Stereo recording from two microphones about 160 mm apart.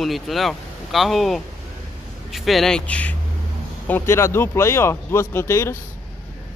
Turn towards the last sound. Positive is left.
turn(degrees=15)  # may be behind; listen again after turning